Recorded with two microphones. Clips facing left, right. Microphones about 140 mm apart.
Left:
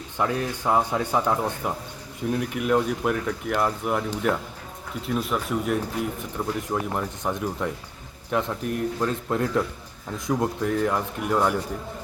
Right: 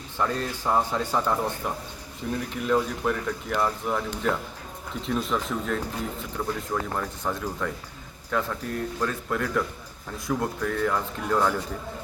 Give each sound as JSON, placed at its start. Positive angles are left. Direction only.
{"t": 0.2, "sound": "speech", "side_deg": 10}